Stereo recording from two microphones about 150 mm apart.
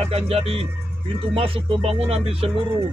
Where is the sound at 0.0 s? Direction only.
45° right (ahead or behind).